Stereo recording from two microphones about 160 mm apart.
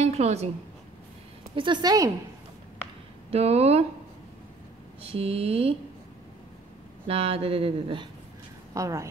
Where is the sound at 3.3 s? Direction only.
40° right (ahead or behind).